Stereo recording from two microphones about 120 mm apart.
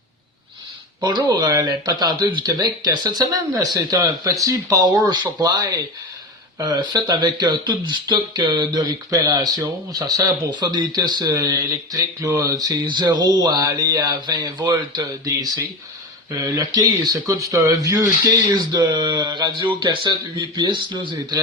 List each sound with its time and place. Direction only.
1.0 s speech: 35° right (ahead or behind)